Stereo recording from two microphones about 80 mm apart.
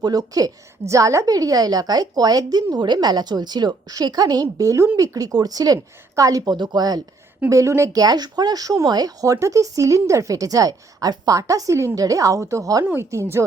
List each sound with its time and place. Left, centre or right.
0.0 s a woman's voice: right
6.4 s a woman's voice: right
7.5 s a woman's voice: right
7.9 s speech: right
12.8 s speech: right
13.1 s a woman's voice: right